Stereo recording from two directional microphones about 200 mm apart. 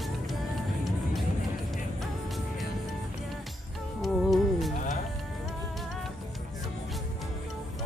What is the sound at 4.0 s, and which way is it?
Music, centre (ahead or behind).